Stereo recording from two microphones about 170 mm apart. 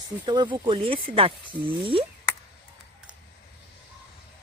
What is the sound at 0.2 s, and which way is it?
Speech, 25° right (ahead or behind).